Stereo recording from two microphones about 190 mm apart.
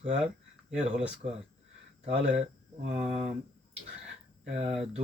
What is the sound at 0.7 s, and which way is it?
Speech, 35° right (ahead or behind).